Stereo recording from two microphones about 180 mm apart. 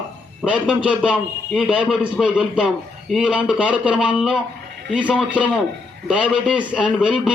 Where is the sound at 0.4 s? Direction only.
5° right (ahead or behind).